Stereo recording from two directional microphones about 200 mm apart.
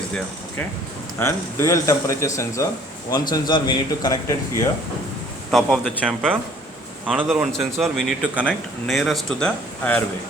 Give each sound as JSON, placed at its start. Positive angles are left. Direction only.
{"t": 1.2, "sound": "a man's voice", "side_deg": 15}
{"t": 5.5, "sound": "speech", "side_deg": 0}
{"t": 7.1, "sound": "speech", "side_deg": -5}